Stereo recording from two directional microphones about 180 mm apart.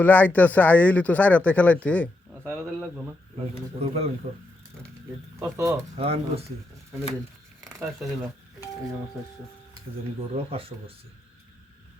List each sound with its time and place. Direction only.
0.0 s speech: 10° left (ahead or behind)
2.4 s speech: 10° right (ahead or behind)
3.8 s speech: 35° right (ahead or behind)
5.4 s speech: 15° right (ahead or behind)
6.0 s speech: 35° right (ahead or behind)
7.6 s speech: 15° right (ahead or behind)
10.3 s speech: 30° right (ahead or behind)